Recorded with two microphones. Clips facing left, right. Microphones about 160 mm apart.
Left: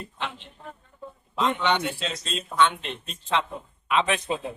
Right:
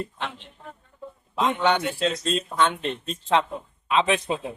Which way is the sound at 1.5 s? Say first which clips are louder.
Right 2 dB; 45° right (ahead or behind).